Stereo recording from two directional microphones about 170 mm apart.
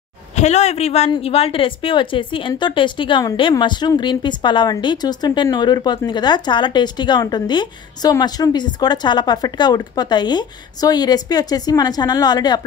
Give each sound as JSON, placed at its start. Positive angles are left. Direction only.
{"t": 0.4, "sound": "a woman's voice", "side_deg": 40}